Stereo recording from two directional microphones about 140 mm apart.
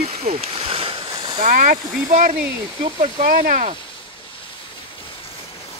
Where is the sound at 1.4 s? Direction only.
70° right (ahead or behind).